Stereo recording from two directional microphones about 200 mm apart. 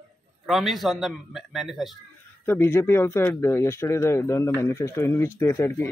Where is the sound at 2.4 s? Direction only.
10° left (ahead or behind).